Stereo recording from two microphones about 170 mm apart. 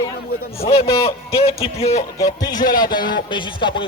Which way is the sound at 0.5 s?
35° left (ahead or behind).